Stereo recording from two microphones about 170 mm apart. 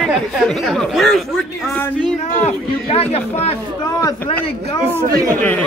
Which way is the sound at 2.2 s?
40° left (ahead or behind).